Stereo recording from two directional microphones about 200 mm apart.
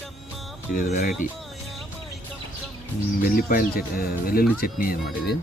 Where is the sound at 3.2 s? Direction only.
45° left (ahead or behind).